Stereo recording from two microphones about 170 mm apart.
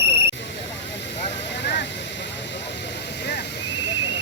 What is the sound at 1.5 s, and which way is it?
Vehicle, 90° left.